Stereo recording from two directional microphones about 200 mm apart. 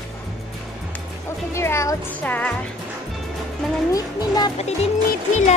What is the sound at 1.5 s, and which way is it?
Speech, 15° left (ahead or behind).